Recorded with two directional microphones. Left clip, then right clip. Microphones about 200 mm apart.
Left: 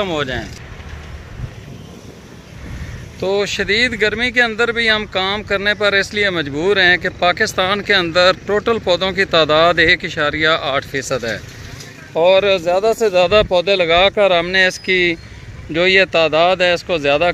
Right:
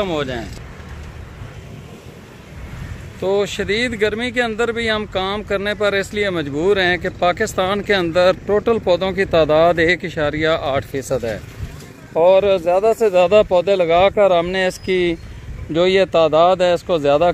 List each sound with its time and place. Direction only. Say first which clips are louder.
0.0 s speech: left 2 dB; 5° right (ahead or behind)
3.2 s speech: left 1 dB; 5° right (ahead or behind); by 17.3 s 20° right (ahead or behind)